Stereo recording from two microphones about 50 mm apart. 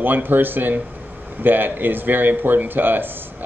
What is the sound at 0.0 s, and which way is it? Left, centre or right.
A man's voice, right.